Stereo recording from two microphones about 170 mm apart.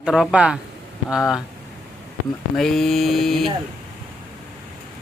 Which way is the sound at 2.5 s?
Centre (ahead or behind).